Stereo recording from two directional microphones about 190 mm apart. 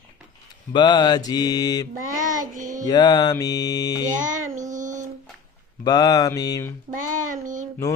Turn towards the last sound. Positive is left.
turn(degrees=-45)  # may be behind; listen again after turning